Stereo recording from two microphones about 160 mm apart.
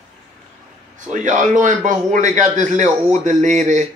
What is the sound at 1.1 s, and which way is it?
Speech, 50° right (ahead or behind).